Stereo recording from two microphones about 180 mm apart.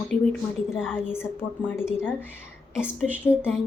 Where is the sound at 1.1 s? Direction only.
15° left (ahead or behind).